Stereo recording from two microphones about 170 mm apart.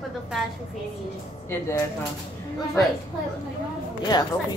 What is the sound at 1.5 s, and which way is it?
Speech, 15° left (ahead or behind).